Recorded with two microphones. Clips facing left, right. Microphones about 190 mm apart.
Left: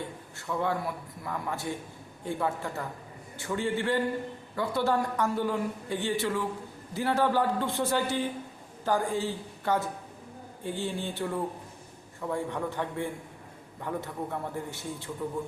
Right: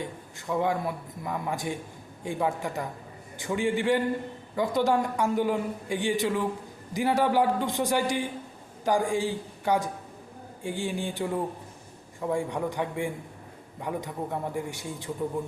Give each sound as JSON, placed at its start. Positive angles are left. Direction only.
{"t": 0.0, "sound": "a man's voice", "side_deg": -15}